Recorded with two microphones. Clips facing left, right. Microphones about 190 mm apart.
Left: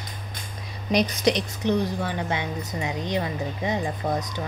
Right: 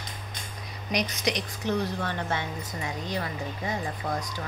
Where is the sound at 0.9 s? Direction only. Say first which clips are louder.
Left 7 dB; 30° left (ahead or behind).